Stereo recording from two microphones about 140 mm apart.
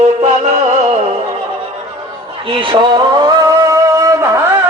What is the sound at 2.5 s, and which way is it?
Music, 35° right (ahead or behind).